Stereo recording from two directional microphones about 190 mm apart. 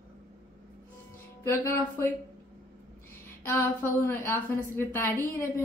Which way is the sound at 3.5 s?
10° left (ahead or behind).